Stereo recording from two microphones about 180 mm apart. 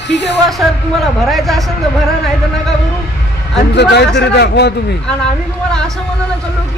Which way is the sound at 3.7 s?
70° left (ahead or behind).